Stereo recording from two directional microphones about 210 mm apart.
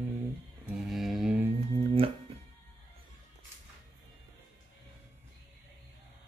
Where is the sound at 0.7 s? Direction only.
Centre (ahead or behind).